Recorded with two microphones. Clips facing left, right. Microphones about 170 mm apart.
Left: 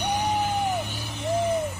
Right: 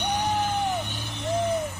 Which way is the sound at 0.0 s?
10° left (ahead or behind).